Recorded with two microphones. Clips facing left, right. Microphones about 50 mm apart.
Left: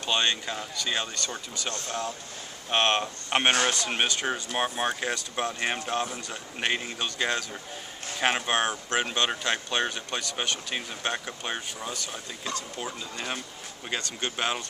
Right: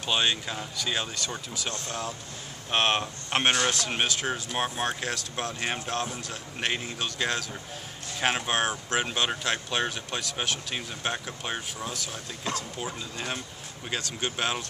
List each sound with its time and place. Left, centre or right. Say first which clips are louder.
0.0 s speech: even; centre